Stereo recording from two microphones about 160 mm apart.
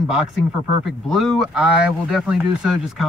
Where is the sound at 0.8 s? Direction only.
Centre (ahead or behind).